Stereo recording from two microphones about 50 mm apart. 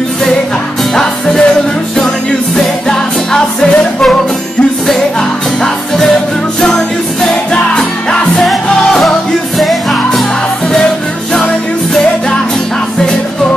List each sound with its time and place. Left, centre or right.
0.9 s music: centre
2.5 s music: centre
7.5 s music: left
8.5 s music: centre